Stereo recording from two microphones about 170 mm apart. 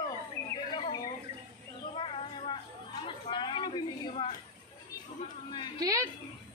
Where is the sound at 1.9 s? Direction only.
30° left (ahead or behind).